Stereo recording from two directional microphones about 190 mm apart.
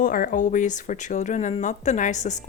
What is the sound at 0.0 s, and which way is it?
A woman's voice, 50° left (ahead or behind).